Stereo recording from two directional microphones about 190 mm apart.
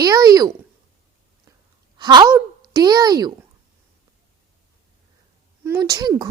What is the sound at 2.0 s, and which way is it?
A woman's voice, 25° right (ahead or behind).